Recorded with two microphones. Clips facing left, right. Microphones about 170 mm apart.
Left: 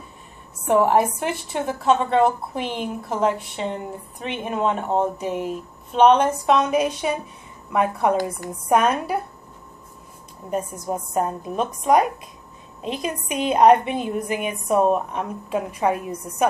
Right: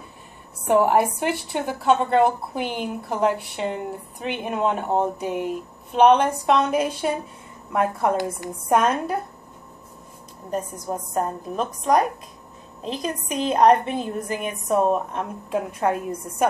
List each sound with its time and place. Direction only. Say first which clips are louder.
0.7 s a woman's voice: even; centre (ahead or behind)
10.5 s a woman's voice: left 2 dB; 5° left (ahead or behind)